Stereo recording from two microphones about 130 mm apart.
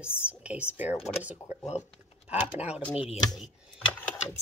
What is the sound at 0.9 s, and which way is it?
Speech, 55° left (ahead or behind).